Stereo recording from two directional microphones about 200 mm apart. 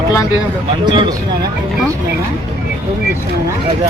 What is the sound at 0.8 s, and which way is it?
Speech, 25° right (ahead or behind).